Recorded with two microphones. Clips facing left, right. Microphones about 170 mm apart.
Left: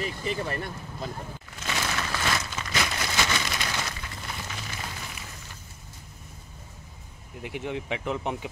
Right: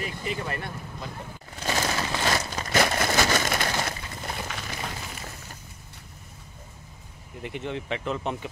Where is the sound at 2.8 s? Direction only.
50° right (ahead or behind).